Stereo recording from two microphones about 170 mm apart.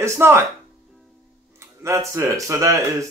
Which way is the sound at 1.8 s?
15° right (ahead or behind).